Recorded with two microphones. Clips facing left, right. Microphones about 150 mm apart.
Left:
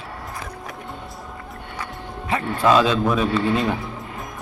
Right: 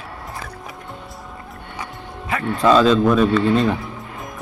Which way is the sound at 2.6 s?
5° left (ahead or behind).